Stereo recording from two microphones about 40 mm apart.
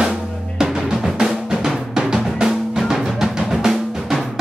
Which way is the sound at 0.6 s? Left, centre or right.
Centre.